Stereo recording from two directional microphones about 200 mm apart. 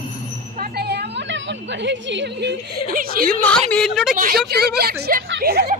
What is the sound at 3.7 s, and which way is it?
Speech, centre (ahead or behind).